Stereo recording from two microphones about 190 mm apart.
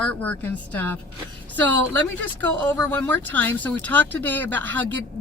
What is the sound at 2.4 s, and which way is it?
Speech, 10° left (ahead or behind).